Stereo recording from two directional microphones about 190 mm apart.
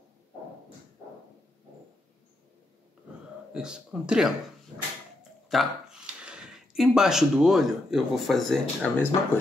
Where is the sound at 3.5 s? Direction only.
5° right (ahead or behind).